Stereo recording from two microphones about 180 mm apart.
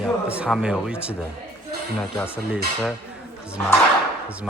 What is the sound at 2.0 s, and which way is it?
Speech, 10° left (ahead or behind).